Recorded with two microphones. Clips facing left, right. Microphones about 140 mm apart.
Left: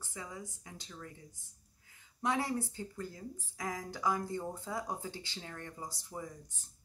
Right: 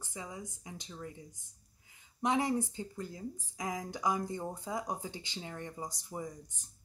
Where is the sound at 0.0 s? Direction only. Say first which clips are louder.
Right 1 dB; 20° right (ahead or behind).